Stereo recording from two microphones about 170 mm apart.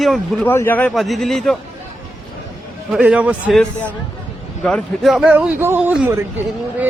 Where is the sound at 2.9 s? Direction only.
5° right (ahead or behind).